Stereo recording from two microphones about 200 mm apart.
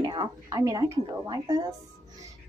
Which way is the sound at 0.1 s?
20° right (ahead or behind).